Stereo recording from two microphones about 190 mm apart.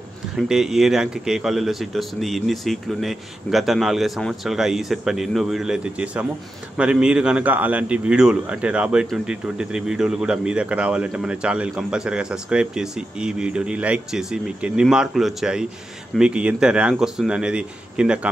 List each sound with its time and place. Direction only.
0.4 s a man's voice: centre (ahead or behind)